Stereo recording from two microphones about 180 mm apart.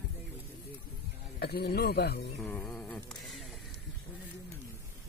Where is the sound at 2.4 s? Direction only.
5° left (ahead or behind).